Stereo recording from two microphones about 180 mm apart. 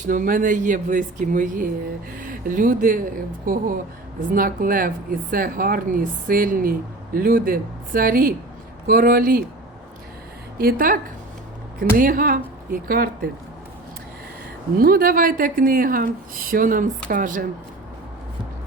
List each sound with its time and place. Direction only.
0.1 s a woman's voice: 50° right (ahead or behind)
10.6 s a woman's voice: 55° right (ahead or behind)
14.8 s a woman's voice: 55° right (ahead or behind)